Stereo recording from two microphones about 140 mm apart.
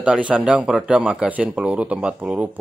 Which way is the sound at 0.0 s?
10° right (ahead or behind).